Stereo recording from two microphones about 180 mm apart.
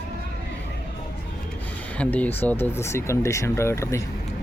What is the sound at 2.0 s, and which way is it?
Speech, 10° left (ahead or behind).